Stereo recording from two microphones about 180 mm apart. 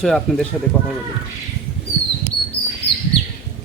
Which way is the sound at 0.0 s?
Centre (ahead or behind).